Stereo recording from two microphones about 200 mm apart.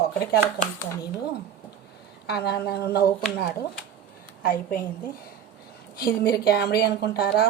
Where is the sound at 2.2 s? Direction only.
55° left (ahead or behind).